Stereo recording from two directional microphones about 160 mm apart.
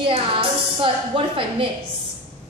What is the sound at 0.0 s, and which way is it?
A woman's voice, 35° right (ahead or behind).